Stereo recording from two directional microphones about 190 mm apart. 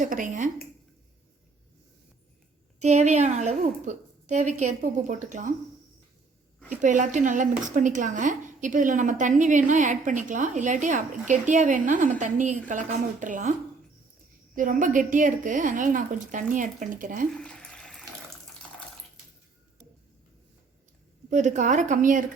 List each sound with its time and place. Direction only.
0.0 s a woman's voice: 45° right (ahead or behind)
2.7 s a woman's voice: 35° right (ahead or behind)
6.8 s a woman's voice: 40° right (ahead or behind)
14.5 s a woman's voice: 45° right (ahead or behind)
17.3 s a sound: 5° left (ahead or behind)
21.2 s a woman's voice: 40° right (ahead or behind)